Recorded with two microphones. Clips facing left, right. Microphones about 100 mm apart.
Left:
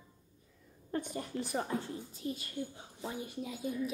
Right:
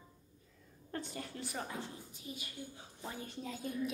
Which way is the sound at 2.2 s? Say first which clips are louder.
Left 9 dB; 55° left (ahead or behind).